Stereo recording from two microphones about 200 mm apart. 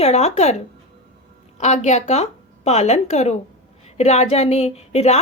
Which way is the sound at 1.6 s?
35° left (ahead or behind).